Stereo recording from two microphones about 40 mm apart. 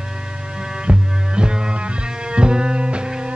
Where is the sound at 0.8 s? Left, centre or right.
Right.